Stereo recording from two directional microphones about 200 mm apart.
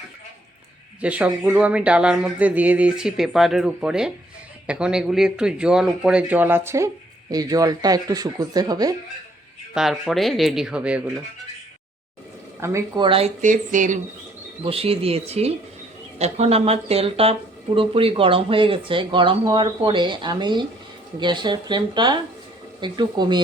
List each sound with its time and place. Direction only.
1.0 s speech: 5° right (ahead or behind)
9.7 s speech: centre (ahead or behind)
12.5 s speech: 15° right (ahead or behind)
13.1 s speech: 30° right (ahead or behind)
14.6 s speech: 30° right (ahead or behind)